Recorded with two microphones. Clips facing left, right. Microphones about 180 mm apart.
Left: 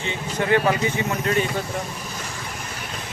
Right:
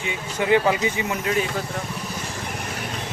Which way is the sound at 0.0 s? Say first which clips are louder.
Even; 10° right (ahead or behind).